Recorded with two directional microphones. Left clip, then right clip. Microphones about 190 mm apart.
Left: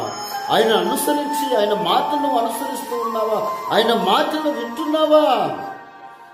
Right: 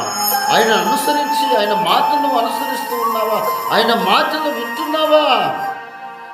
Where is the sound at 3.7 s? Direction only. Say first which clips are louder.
Right 2 dB; centre (ahead or behind).